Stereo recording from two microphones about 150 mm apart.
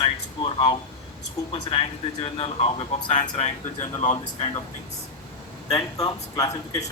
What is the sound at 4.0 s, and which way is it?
Speech, 55° left (ahead or behind).